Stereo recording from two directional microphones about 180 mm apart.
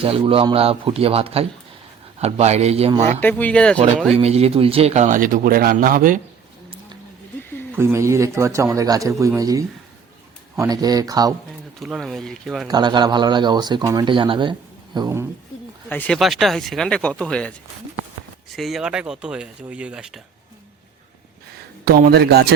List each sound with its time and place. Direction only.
0.0 s a man's voice: 30° right (ahead or behind)
3.2 s speech: 10° left (ahead or behind)
4.2 s speech: 35° right (ahead or behind); by 6.1 s 50° right (ahead or behind)
7.7 s a man's voice: 10° right (ahead or behind)
11.8 s speech: centre (ahead or behind)
12.6 s a man's voice: 25° right (ahead or behind)
15.9 s speech: 10° left (ahead or behind)
18.5 s speech: centre (ahead or behind)
21.8 s a man's voice: 60° right (ahead or behind)